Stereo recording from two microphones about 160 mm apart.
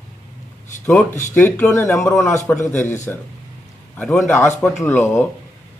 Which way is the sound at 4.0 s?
5° left (ahead or behind).